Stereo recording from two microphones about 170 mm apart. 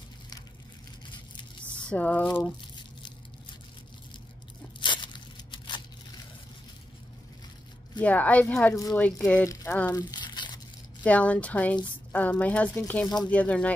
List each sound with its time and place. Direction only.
1.9 s a woman's voice: 10° left (ahead or behind)
4.7 s tearing: 30° left (ahead or behind)
8.0 s a woman's voice: 10° left (ahead or behind)
9.5 s speech: 20° left (ahead or behind)
9.9 s crumpling: 25° left (ahead or behind)
11.1 s a woman's voice: 10° left (ahead or behind)
13.0 s speech: 20° left (ahead or behind)
13.3 s a woman's voice: 10° left (ahead or behind)